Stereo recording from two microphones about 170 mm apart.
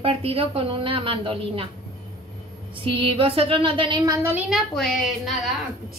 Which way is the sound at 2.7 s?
30° right (ahead or behind).